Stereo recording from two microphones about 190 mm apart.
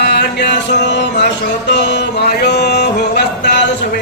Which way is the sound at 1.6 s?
65° left (ahead or behind).